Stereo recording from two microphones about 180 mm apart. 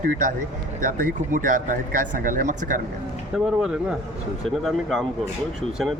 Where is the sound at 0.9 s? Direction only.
50° right (ahead or behind).